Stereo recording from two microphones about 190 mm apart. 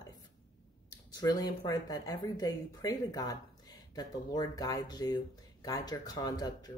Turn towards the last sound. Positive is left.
turn(degrees=20)  # may be behind; listen again after turning